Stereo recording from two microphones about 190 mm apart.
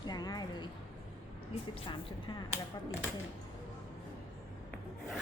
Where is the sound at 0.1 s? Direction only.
20° left (ahead or behind).